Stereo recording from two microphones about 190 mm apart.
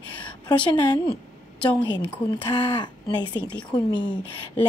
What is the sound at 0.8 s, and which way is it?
Speech, 20° left (ahead or behind).